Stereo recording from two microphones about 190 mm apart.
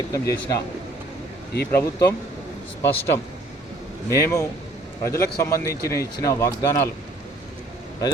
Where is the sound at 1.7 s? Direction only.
15° left (ahead or behind).